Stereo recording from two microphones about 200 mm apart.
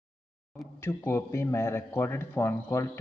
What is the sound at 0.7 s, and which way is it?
Speech, 10° left (ahead or behind).